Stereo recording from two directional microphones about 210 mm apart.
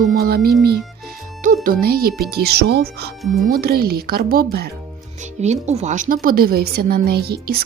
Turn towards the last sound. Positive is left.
turn(degrees=-45)  # may be behind; listen again after turning